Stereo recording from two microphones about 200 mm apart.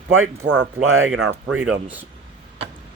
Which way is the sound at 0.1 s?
90° right.